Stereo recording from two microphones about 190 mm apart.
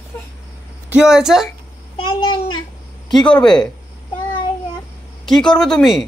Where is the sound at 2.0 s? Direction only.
25° left (ahead or behind).